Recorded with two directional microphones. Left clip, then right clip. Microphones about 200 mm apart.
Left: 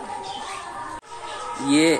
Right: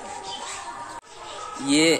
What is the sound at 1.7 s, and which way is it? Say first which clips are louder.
Speech: left 1 dB; 90° right.